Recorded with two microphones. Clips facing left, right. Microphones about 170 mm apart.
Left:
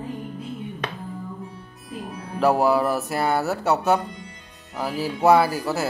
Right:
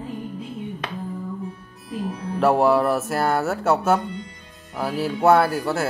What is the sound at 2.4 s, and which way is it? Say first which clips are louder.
Speech: right 1 dB; centre (ahead or behind).